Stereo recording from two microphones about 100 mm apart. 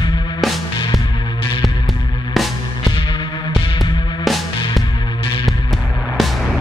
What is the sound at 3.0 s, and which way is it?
Music, 55° left (ahead or behind).